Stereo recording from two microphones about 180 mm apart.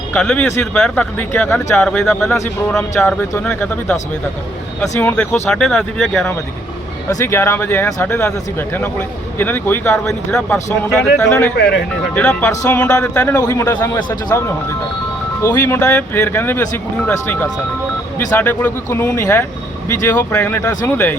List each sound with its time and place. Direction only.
0.1 s a man's voice: 5° left (ahead or behind)
2.3 s a man's voice: 15° left (ahead or behind)
7.1 s a man's voice: 15° left (ahead or behind)
11.2 s a man's voice: 15° left (ahead or behind)
11.5 s speech: 65° left (ahead or behind)
12.1 s a man's voice: 5° left (ahead or behind)